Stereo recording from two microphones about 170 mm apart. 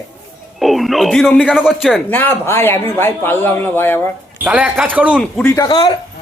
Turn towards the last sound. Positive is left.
turn(degrees=25)  # may be behind; listen again after turning